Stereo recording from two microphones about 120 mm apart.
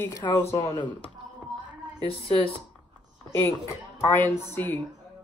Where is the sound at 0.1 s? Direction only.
35° left (ahead or behind).